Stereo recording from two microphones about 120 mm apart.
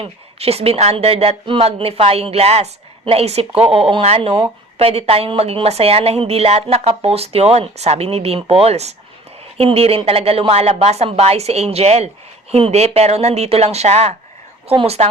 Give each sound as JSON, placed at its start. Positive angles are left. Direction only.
{"t": 0.0, "sound": "a woman's voice", "side_deg": -55}